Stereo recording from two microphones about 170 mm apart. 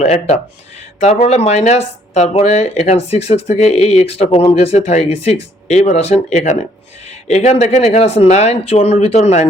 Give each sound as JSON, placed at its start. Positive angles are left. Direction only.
{"t": 0.0, "sound": "speech", "side_deg": 35}